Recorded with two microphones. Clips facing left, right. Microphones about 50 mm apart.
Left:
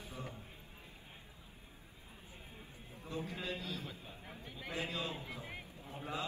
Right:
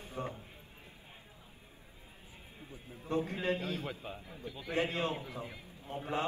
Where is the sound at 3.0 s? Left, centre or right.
Right.